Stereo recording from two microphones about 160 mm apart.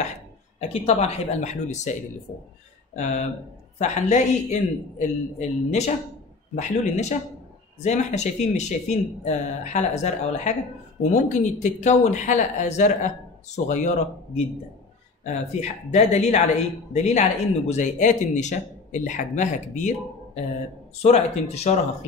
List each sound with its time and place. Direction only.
0.6 s speech: 40° left (ahead or behind)
3.7 s speech: 45° left (ahead or behind)
21.0 s speech: 45° left (ahead or behind)